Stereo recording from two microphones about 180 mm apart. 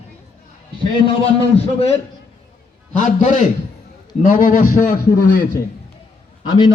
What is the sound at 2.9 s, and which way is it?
A man's voice, 45° left (ahead or behind).